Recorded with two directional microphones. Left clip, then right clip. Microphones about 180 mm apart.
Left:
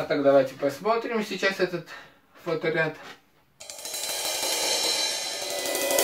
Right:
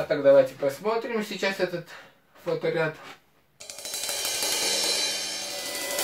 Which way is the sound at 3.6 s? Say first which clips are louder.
Even; centre (ahead or behind).